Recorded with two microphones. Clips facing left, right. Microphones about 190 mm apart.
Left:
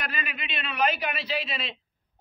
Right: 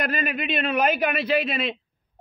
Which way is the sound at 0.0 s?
45° right (ahead or behind).